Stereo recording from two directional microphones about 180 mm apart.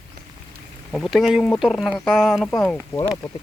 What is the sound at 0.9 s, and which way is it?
Speech, centre (ahead or behind).